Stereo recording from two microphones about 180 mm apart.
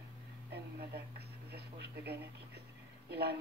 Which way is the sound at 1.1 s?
65° right (ahead or behind).